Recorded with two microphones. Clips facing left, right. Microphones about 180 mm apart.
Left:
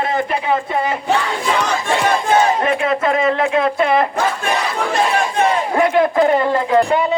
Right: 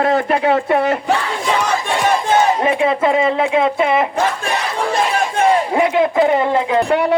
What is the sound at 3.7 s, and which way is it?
Speech, 10° right (ahead or behind).